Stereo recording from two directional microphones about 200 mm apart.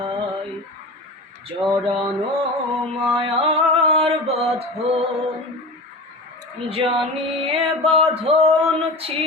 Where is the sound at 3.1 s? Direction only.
30° right (ahead or behind).